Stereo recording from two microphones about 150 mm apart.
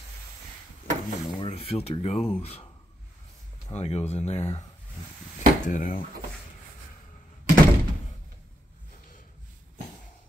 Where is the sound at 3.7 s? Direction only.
45° left (ahead or behind).